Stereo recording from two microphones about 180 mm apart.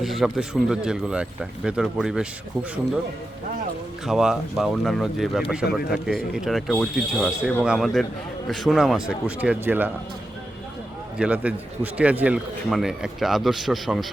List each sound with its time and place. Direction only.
0.0 s a man's voice: centre (ahead or behind)
4.0 s a man's voice: 5° right (ahead or behind)
11.2 s a man's voice: 5° right (ahead or behind)